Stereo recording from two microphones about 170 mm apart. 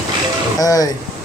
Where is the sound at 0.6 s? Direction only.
20° left (ahead or behind).